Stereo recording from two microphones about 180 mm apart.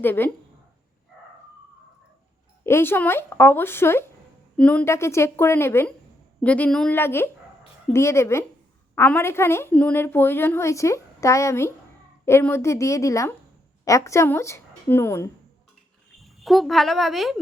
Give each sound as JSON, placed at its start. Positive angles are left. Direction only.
{"t": 0.0, "sound": "a woman's voice", "side_deg": 10}
{"t": 2.6, "sound": "a woman's voice", "side_deg": 15}
{"t": 16.2, "sound": "speech", "side_deg": 0}